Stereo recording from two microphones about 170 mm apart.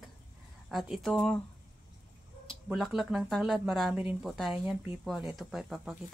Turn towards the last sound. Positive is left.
turn(degrees=-5)  # may be behind; listen again after turning